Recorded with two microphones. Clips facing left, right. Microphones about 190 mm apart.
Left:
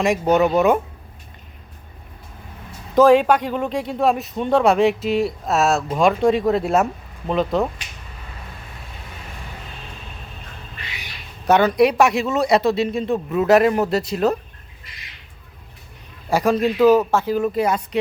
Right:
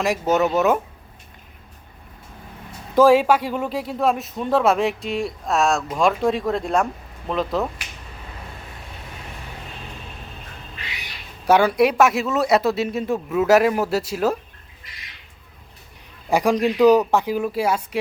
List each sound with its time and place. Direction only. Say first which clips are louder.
0.0 s speech: left 3 dB; centre (ahead or behind)
2.9 s speech: left 1 dB; 10° right (ahead or behind)
11.4 s speech: left 1 dB; 10° right (ahead or behind)
16.3 s speech: left 1 dB; 15° right (ahead or behind)